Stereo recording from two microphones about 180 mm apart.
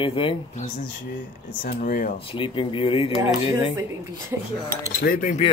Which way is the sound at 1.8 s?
50° left (ahead or behind).